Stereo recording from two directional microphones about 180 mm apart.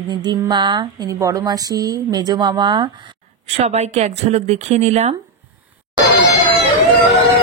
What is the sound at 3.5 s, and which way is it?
A woman's voice, 35° right (ahead or behind).